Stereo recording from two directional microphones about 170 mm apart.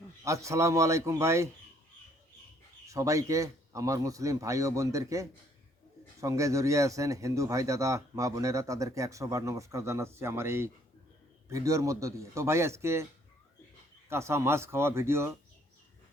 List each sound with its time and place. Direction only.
0.3 s a man's voice: 15° right (ahead or behind)
2.8 s a man's voice: 20° right (ahead or behind)
14.1 s a man's voice: 15° right (ahead or behind)